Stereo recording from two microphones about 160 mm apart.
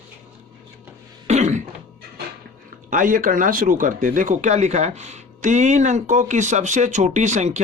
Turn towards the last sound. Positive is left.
turn(degrees=-45)  # may be behind; listen again after turning